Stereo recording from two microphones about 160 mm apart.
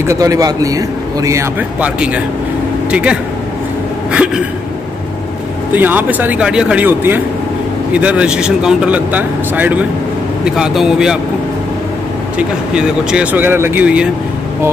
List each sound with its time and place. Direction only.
0.0 s a man's voice: 20° right (ahead or behind)
2.9 s speech: 5° right (ahead or behind)
5.7 s speech: 10° right (ahead or behind)
12.4 s speech: 5° right (ahead or behind)